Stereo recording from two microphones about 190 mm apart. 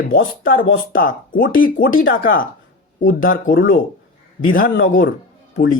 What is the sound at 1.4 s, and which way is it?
Speech, 85° left.